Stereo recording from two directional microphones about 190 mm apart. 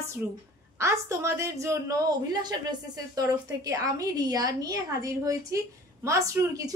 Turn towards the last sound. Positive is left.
turn(degrees=-15)  # may be behind; listen again after turning